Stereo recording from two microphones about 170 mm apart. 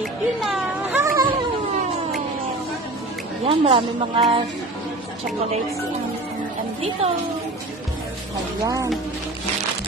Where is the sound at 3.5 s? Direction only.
30° right (ahead or behind).